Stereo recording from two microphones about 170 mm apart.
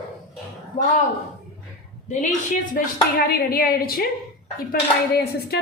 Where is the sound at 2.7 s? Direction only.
60° left (ahead or behind).